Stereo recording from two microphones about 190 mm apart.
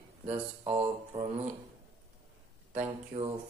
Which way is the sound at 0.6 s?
35° right (ahead or behind).